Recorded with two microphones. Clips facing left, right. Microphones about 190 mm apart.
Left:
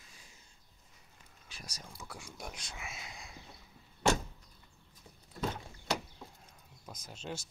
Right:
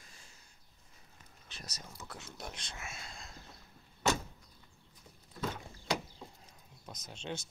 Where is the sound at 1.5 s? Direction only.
10° left (ahead or behind).